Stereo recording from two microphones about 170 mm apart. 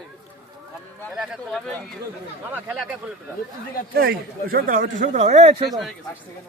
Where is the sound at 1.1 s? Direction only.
Centre (ahead or behind).